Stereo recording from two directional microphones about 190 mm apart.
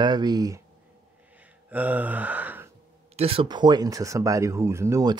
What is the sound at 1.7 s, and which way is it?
Speech, 10° right (ahead or behind).